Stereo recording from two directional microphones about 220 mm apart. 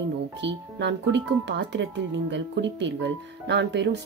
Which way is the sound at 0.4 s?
50° right (ahead or behind).